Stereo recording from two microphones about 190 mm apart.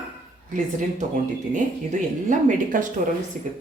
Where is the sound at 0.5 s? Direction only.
40° right (ahead or behind).